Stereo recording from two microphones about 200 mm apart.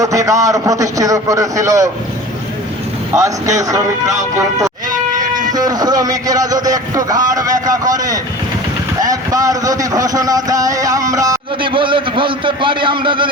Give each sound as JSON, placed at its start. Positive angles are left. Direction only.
{"t": 0.0, "sound": "a man's voice", "side_deg": -15}
{"t": 3.1, "sound": "a man's voice", "side_deg": -15}
{"t": 4.4, "sound": "cat", "side_deg": -15}
{"t": 5.5, "sound": "a man's voice", "side_deg": -20}